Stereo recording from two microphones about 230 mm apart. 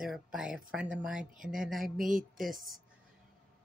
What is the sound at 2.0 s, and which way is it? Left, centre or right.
Speech, right.